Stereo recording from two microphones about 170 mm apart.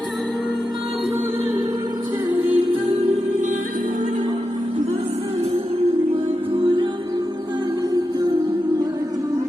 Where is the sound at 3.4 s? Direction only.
45° right (ahead or behind); by 9.2 s 20° right (ahead or behind).